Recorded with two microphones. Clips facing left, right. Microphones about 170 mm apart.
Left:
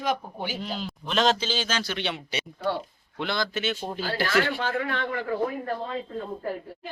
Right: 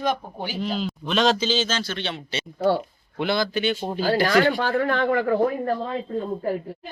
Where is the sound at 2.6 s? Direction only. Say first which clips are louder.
Right 9 dB; 35° right (ahead or behind).